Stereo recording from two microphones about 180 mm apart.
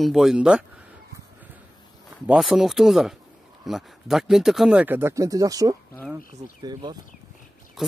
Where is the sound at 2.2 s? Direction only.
Centre (ahead or behind); by 7.0 s 20° right (ahead or behind).